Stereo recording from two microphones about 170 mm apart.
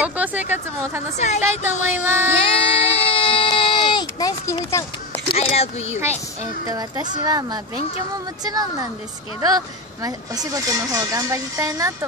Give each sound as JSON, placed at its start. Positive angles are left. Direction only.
{"t": 0.0, "sound": "speech", "side_deg": -10}
{"t": 1.1, "sound": "a woman's voice", "side_deg": 40}
{"t": 1.4, "sound": "speech", "side_deg": -15}
{"t": 1.7, "sound": "a woman's voice", "side_deg": 45}
{"t": 2.0, "sound": "speech", "side_deg": -10}
{"t": 2.3, "sound": "child singing", "side_deg": 35}
{"t": 3.2, "sound": "a sound", "side_deg": 30}
{"t": 5.3, "sound": "speech", "side_deg": 35}
{"t": 6.7, "sound": "speech", "side_deg": -20}
{"t": 10.0, "sound": "speech", "side_deg": -20}